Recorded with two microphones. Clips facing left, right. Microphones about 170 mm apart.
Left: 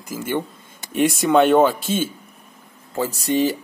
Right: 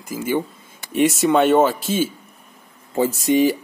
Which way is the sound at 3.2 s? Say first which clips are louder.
Right 3 dB; 15° right (ahead or behind).